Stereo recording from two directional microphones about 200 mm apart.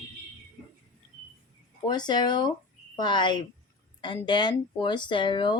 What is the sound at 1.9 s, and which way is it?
Speech, 20° left (ahead or behind).